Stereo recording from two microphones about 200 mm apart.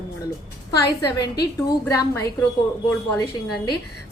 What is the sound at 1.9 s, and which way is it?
Speech, 15° left (ahead or behind).